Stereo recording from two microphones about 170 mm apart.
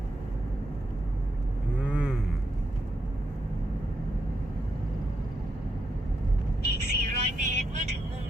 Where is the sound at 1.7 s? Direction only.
5° right (ahead or behind).